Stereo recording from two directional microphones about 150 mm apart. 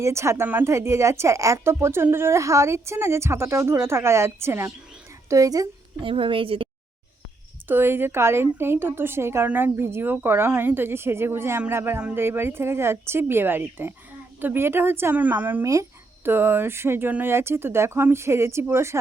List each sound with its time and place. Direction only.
0.0 s a woman's voice: 20° right (ahead or behind)
6.0 s a woman's voice: 35° right (ahead or behind)
7.7 s a woman's voice: 15° right (ahead or behind)